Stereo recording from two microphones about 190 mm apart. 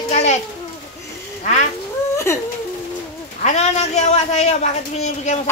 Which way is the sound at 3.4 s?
35° left (ahead or behind).